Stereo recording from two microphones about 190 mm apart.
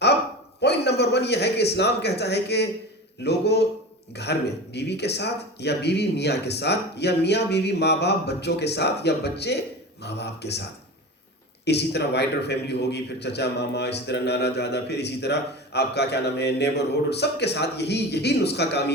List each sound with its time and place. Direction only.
0.6 s a man's voice: 60° left (ahead or behind)
11.6 s a man's voice: 60° left (ahead or behind)